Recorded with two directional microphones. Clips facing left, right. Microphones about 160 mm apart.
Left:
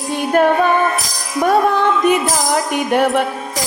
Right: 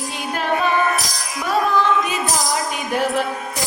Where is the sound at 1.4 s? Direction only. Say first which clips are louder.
Left 4 dB; 60° left (ahead or behind).